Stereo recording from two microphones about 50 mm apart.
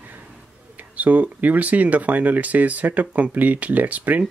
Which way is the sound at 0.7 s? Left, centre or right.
Right.